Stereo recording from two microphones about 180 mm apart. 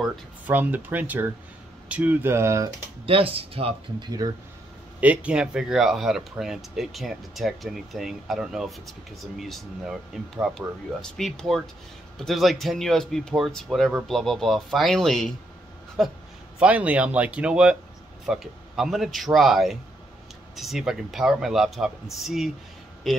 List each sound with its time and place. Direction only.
0.0 s speech: 10° right (ahead or behind)
3.1 s speech: 30° right (ahead or behind)
4.2 s speech: 20° right (ahead or behind)
5.0 s speech: 5° right (ahead or behind)